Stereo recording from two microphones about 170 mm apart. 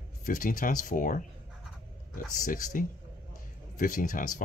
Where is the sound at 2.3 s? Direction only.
50° left (ahead or behind).